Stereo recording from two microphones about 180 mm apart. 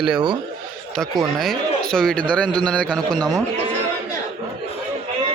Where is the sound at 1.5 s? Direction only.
5° left (ahead or behind).